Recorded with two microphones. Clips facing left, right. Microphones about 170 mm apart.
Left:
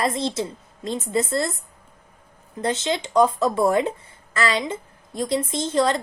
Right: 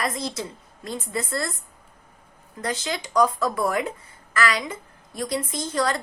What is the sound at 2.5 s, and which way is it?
A woman's voice, 25° left (ahead or behind).